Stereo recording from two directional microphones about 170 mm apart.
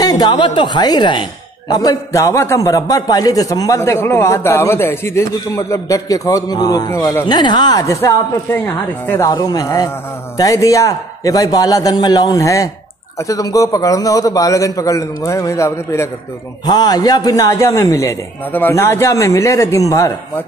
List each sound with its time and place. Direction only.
0.0 s a man's voice: 20° left (ahead or behind)